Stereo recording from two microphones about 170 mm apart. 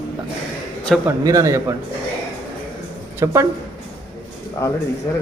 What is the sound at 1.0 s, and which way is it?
Speech, 20° right (ahead or behind).